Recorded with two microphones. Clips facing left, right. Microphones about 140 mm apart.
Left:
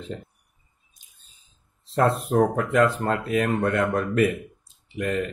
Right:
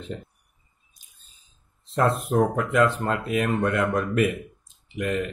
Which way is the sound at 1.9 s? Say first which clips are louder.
Left 1 dB; 35° left (ahead or behind).